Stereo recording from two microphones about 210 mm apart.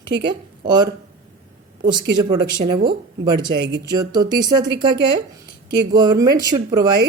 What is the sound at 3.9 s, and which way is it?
Speech, 20° right (ahead or behind).